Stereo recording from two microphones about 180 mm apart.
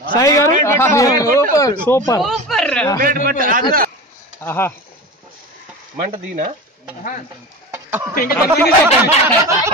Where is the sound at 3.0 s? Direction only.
50° right (ahead or behind).